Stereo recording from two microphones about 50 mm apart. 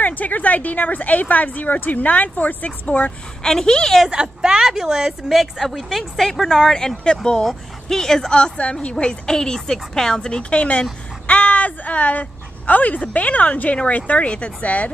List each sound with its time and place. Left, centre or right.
0.0 s speech: left
3.4 s a woman's voice: centre
4.1 s a woman's voice: centre; by 14.9 s left